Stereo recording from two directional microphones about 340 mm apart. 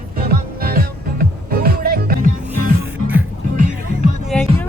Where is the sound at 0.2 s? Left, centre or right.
Right.